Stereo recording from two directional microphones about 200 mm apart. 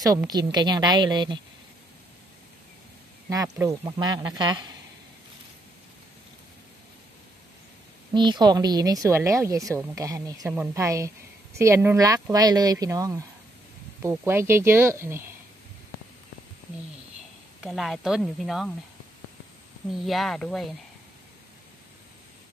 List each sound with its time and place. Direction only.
0.0 s a woman's voice: 15° right (ahead or behind)
3.3 s a woman's voice: 15° right (ahead or behind)
8.1 s a woman's voice: 20° right (ahead or behind)
17.6 s speech: centre (ahead or behind)
19.9 s speech: centre (ahead or behind)